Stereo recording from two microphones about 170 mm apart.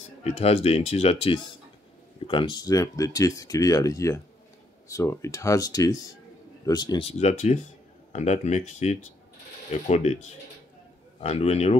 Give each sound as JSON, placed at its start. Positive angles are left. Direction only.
{"t": 0.2, "sound": "speech", "side_deg": 35}
{"t": 11.1, "sound": "speech", "side_deg": 35}